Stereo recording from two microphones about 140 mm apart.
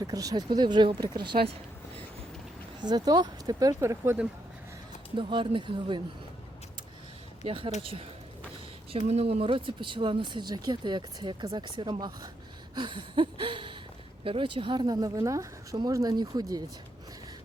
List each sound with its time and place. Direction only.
0.0 s speech: 25° right (ahead or behind)
2.8 s speech: 30° right (ahead or behind)
5.1 s speech: 35° right (ahead or behind)
7.4 s speech: 40° right (ahead or behind)
12.7 s a sound: 35° right (ahead or behind)
14.3 s speech: 40° right (ahead or behind)